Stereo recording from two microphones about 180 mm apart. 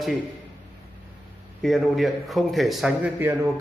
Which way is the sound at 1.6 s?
Centre (ahead or behind).